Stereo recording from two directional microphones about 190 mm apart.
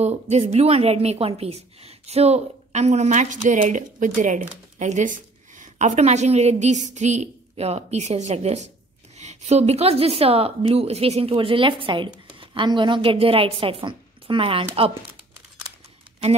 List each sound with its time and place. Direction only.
0.0 s a woman's voice: 35° right (ahead or behind)